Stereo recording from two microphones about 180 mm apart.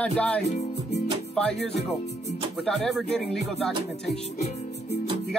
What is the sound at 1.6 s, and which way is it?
Speech, 70° left (ahead or behind).